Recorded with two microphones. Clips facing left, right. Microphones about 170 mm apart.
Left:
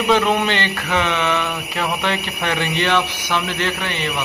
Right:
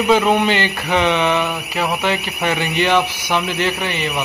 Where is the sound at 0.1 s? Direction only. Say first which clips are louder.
Right 2 dB; 5° right (ahead or behind).